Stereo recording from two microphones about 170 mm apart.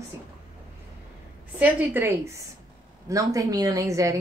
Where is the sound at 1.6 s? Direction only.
10° right (ahead or behind).